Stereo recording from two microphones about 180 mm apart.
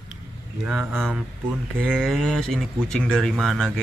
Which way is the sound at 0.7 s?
5° right (ahead or behind).